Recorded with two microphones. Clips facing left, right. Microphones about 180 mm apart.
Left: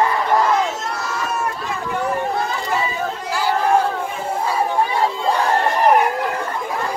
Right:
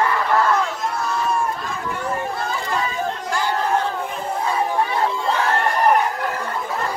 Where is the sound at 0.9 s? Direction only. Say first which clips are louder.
Right 2 dB; 80° left.